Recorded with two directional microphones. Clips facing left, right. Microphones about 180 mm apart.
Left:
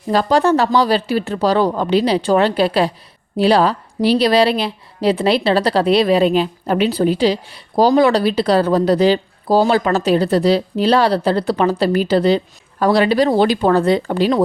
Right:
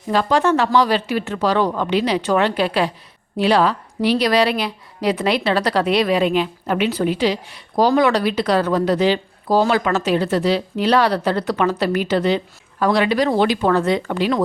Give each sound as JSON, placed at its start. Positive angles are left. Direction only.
{"t": 0.1, "sound": "speech", "side_deg": 35}